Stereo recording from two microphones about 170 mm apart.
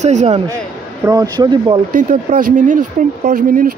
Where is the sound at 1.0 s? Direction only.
20° right (ahead or behind).